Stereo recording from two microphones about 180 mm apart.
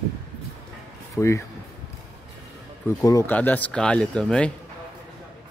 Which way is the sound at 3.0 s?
20° left (ahead or behind).